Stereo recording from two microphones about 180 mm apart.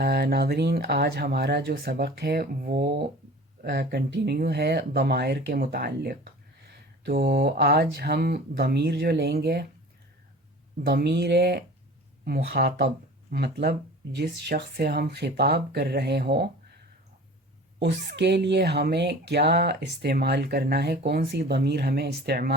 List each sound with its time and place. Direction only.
0.0 s speech: 65° right (ahead or behind)
10.8 s speech: 65° right (ahead or behind)
17.7 s speech: 70° right (ahead or behind)